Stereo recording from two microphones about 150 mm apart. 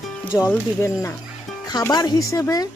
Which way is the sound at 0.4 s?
15° left (ahead or behind).